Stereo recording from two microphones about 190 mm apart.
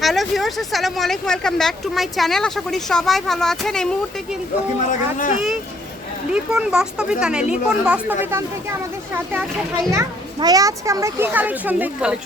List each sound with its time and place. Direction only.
0.0 s speech: centre (ahead or behind)
4.9 s speech: 45° left (ahead or behind)
6.3 s speech: 5° right (ahead or behind)
9.9 s a child's voice: 15° right (ahead or behind)